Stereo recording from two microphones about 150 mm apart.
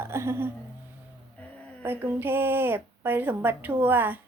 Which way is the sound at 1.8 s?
15° right (ahead or behind).